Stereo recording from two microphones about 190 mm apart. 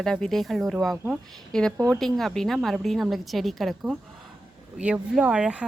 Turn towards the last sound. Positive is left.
turn(degrees=-5)  # may be behind; listen again after turning